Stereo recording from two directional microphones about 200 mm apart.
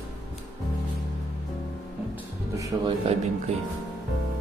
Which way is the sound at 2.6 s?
25° right (ahead or behind).